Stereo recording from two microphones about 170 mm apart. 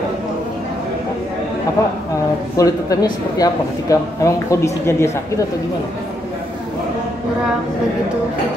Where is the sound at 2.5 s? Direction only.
20° left (ahead or behind).